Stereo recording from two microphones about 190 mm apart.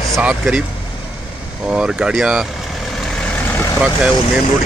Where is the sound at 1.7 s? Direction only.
5° right (ahead or behind).